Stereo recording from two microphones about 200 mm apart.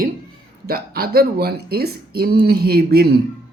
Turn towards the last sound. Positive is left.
turn(degrees=-50)  # may be behind; listen again after turning